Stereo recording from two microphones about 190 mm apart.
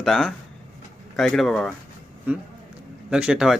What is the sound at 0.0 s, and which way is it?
Speech, centre (ahead or behind).